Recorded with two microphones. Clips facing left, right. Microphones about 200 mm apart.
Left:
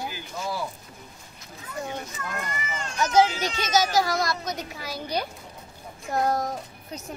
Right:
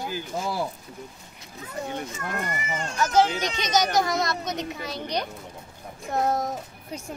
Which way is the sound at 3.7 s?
5° left (ahead or behind).